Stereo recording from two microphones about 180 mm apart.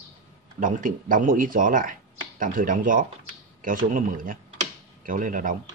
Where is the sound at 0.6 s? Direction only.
50° right (ahead or behind).